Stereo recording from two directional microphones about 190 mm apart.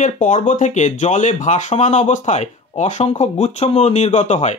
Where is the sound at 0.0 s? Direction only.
40° left (ahead or behind).